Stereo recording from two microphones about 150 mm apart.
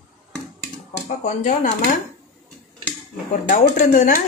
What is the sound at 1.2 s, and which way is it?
Speech, 55° left (ahead or behind).